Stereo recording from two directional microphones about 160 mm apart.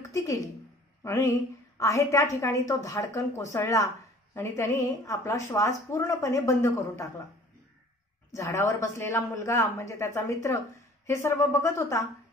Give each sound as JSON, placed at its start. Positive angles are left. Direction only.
{"t": 0.1, "sound": "a woman's voice", "side_deg": 20}
{"t": 8.3, "sound": "speech", "side_deg": 20}